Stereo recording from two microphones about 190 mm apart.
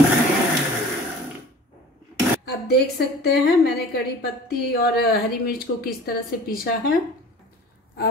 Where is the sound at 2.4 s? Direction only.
60° left (ahead or behind).